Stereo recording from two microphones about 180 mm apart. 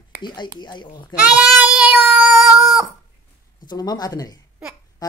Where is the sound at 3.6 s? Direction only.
20° left (ahead or behind).